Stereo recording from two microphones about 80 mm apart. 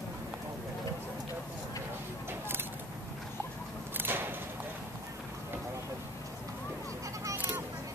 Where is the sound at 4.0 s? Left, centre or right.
Right.